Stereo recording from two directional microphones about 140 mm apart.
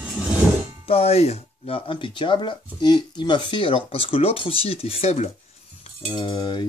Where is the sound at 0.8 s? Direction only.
45° left (ahead or behind).